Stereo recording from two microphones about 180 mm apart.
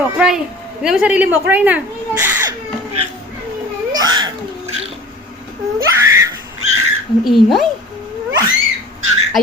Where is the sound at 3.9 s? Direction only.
25° right (ahead or behind).